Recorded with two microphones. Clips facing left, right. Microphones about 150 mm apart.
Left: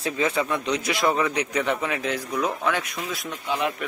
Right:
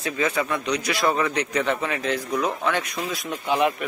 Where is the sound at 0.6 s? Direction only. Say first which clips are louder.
Even; 25° left (ahead or behind); by 2.5 s 10° left (ahead or behind).